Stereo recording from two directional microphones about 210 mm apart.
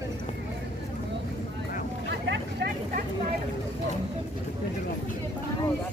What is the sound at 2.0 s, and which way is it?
Vehicle, 55° right (ahead or behind).